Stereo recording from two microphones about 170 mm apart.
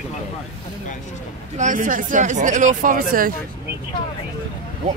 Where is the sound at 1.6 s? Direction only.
50° right (ahead or behind).